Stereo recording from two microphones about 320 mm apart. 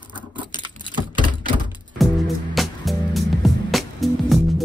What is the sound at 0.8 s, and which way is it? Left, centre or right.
Typing, centre.